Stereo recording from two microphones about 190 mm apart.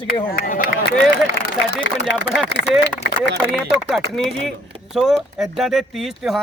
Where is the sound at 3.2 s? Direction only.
Centre (ahead or behind).